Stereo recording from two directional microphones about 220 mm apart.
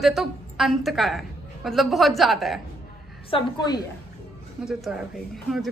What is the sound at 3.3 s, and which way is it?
Speech, 20° left (ahead or behind).